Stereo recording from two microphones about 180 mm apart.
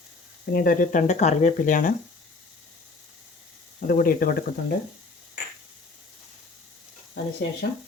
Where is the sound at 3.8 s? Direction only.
55° left (ahead or behind).